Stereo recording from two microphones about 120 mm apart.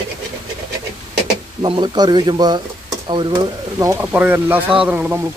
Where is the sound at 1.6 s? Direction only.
40° right (ahead or behind).